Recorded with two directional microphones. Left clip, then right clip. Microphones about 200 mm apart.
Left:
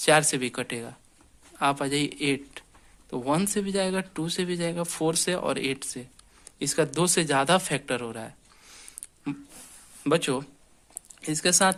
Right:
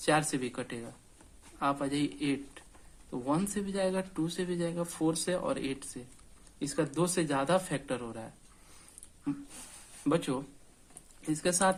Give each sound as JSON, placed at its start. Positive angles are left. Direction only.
{"t": 0.0, "sound": "speech", "side_deg": 30}
{"t": 10.0, "sound": "speech", "side_deg": 25}